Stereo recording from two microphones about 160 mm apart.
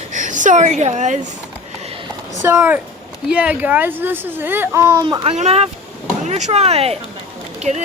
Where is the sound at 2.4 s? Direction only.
10° right (ahead or behind).